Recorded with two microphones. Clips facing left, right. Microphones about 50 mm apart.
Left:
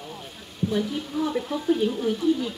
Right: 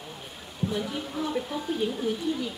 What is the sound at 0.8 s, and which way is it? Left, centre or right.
Speech, centre.